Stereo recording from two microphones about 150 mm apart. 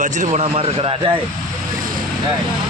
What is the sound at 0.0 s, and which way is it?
A man's voice, 50° right (ahead or behind).